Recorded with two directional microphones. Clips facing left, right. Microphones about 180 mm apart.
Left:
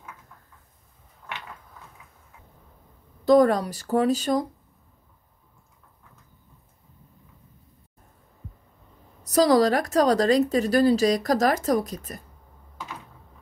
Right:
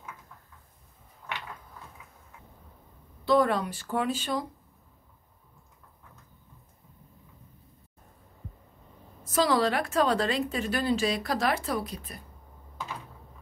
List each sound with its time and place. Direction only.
3.3 s speech: 40° left (ahead or behind)
9.2 s speech: 40° left (ahead or behind)